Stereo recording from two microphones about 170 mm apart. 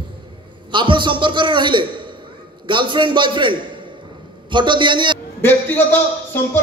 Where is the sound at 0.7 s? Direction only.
30° right (ahead or behind).